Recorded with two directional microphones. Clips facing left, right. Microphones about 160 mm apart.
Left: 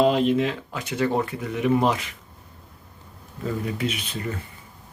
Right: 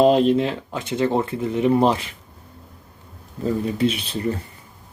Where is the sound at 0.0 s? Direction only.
35° right (ahead or behind).